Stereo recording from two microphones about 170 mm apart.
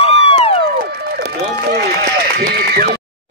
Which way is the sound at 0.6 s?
70° right (ahead or behind).